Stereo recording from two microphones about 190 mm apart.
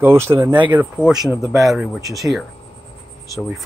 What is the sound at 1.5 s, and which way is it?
Speech, centre (ahead or behind).